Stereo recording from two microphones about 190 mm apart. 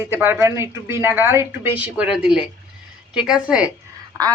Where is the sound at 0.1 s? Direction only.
10° right (ahead or behind).